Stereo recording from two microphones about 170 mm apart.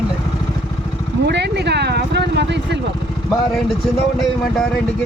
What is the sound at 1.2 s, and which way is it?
Speech, 80° right.